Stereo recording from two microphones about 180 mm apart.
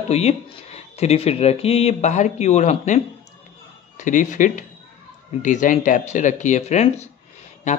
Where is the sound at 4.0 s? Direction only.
45° left (ahead or behind).